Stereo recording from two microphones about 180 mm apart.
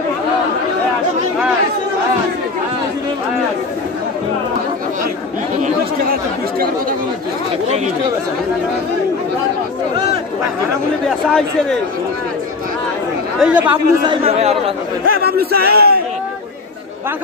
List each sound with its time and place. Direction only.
11.1 s a sound: 5° left (ahead or behind)
13.4 s speech: 5° right (ahead or behind)
13.7 s speech: 30° right (ahead or behind)
15.2 s a man's voice: 60° right (ahead or behind)